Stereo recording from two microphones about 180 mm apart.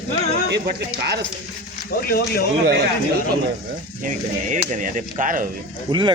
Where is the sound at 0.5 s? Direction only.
70° right (ahead or behind).